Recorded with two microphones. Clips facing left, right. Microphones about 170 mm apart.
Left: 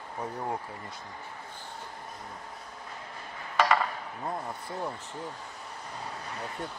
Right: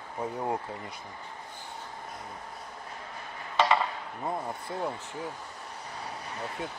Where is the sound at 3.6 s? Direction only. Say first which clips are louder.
Even; 20° right (ahead or behind).